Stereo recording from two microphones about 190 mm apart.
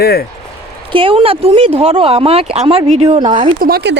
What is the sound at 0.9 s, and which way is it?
Speech, 25° right (ahead or behind).